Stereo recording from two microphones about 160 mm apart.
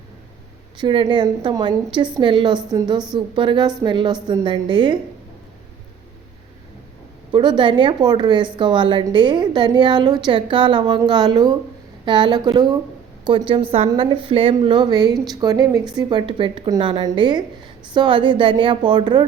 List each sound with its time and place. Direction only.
0.8 s a woman's voice: 30° right (ahead or behind)
7.3 s a woman's voice: 30° right (ahead or behind)